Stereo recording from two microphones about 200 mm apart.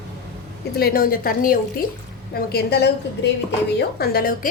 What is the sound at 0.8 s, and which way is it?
A woman's voice, 50° left (ahead or behind).